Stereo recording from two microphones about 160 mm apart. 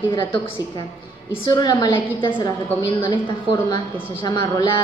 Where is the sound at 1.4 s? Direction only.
25° left (ahead or behind).